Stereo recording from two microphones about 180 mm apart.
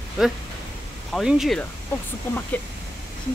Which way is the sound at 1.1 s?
5° right (ahead or behind).